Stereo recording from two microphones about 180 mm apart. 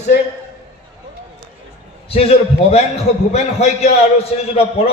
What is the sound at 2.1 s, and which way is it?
A man's voice, 35° left (ahead or behind).